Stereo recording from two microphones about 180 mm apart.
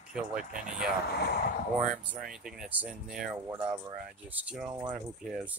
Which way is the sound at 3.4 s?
25° right (ahead or behind).